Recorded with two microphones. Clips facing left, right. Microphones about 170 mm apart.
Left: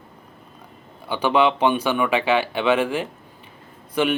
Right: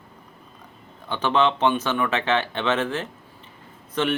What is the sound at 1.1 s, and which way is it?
Speech, 10° left (ahead or behind).